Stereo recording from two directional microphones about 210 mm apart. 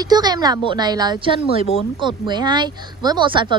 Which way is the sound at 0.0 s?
20° right (ahead or behind).